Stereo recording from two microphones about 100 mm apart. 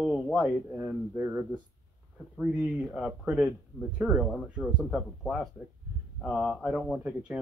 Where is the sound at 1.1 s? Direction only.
25° right (ahead or behind).